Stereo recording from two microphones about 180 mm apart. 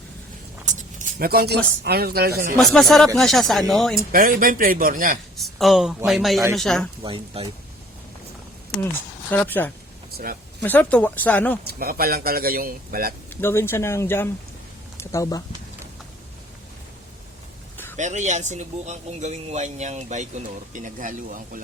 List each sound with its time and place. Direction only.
0.9 s speech: 50° right (ahead or behind)
2.6 s speech: centre (ahead or behind)
4.1 s a man's voice: 50° right (ahead or behind)
5.4 s a woman's voice: centre (ahead or behind)
7.0 s speech: 30° right (ahead or behind)
9.3 s speech: 10° left (ahead or behind)
11.6 s speech: 55° right (ahead or behind)
13.3 s speech: 15° left (ahead or behind)
17.9 s a man's voice: 40° right (ahead or behind)